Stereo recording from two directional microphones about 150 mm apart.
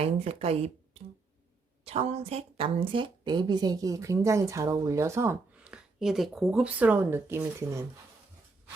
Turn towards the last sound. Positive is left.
turn(degrees=-15)  # may be behind; listen again after turning